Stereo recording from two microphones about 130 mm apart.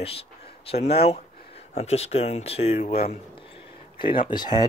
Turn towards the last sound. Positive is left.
turn(degrees=35)  # may be behind; listen again after turning